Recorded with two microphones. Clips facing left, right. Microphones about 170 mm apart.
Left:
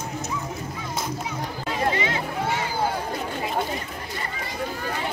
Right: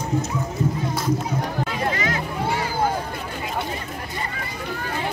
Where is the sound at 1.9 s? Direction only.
25° left (ahead or behind).